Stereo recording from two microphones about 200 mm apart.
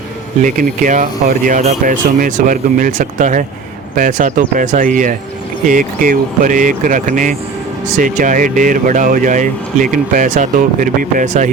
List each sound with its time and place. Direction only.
0.4 s speech: 40° right (ahead or behind)